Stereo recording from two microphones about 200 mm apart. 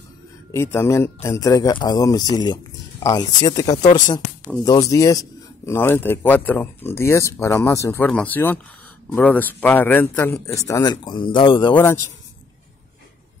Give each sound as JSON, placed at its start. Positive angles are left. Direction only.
{"t": 0.5, "sound": "speech", "side_deg": 15}
{"t": 11.7, "sound": "speech", "side_deg": 10}